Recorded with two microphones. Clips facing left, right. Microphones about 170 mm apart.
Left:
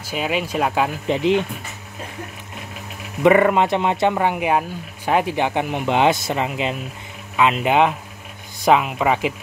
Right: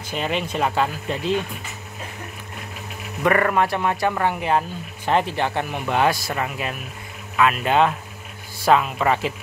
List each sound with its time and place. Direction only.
0.1 s speech: 5° left (ahead or behind)
1.0 s speech: 20° left (ahead or behind)
3.3 s speech: 20° left (ahead or behind)